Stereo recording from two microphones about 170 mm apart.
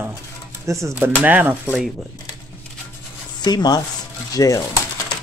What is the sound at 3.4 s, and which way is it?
Speech, 25° left (ahead or behind).